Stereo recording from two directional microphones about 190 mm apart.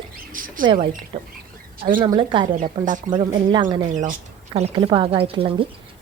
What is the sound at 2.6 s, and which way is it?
Speech, 40° right (ahead or behind).